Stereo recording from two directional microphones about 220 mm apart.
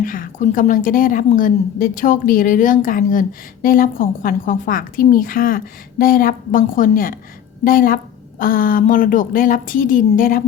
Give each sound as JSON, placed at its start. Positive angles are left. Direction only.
{"t": 0.0, "sound": "a woman's voice", "side_deg": 35}